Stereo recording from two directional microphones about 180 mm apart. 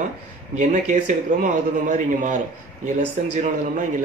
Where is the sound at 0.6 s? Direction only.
45° right (ahead or behind).